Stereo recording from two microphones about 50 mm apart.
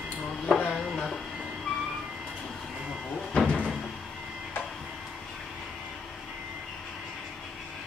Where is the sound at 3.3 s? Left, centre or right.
Centre.